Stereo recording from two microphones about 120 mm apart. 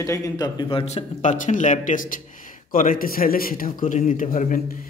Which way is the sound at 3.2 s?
90° left.